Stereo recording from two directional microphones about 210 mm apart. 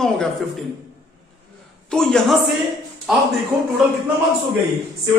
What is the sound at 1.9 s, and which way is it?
Speech, centre (ahead or behind).